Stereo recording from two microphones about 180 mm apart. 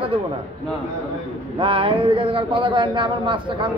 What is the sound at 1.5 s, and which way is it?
A man's voice, 30° right (ahead or behind).